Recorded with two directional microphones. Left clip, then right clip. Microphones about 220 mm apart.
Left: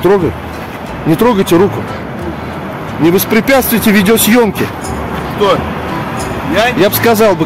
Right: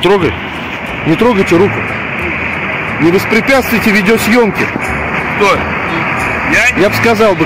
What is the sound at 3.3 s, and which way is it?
Speech, 15° left (ahead or behind).